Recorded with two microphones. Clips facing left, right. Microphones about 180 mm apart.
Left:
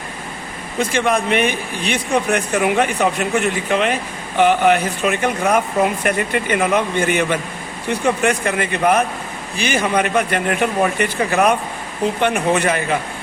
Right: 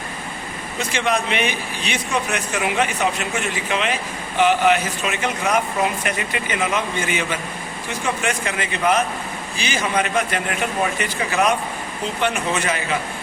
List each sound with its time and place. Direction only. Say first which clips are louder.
0.8 s speech: left 4 dB; 55° left (ahead or behind)